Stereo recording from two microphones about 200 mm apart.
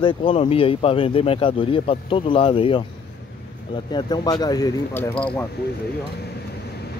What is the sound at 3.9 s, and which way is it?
Speech, 20° left (ahead or behind).